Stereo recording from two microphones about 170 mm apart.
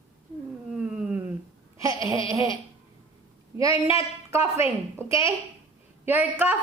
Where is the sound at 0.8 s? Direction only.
10° right (ahead or behind).